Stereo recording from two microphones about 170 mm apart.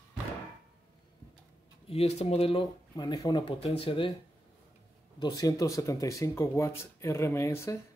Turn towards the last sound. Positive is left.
turn(degrees=15)  # may be behind; listen again after turning